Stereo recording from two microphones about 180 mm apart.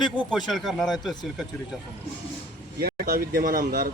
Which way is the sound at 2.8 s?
55° right (ahead or behind).